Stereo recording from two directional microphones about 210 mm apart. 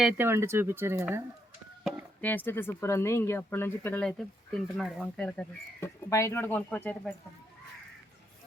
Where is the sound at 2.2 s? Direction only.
10° left (ahead or behind).